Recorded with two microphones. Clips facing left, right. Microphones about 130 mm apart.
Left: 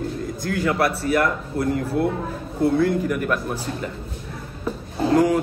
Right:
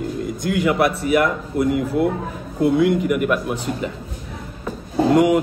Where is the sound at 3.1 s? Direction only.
10° right (ahead or behind).